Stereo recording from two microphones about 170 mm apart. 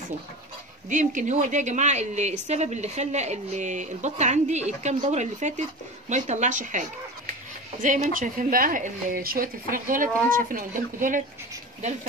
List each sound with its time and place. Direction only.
0.8 s a woman's voice: 45° right (ahead or behind)